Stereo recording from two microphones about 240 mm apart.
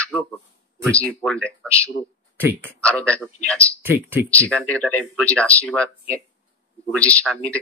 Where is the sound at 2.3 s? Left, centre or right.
Centre.